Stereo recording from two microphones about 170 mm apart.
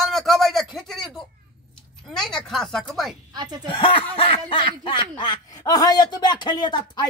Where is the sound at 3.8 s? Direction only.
30° left (ahead or behind).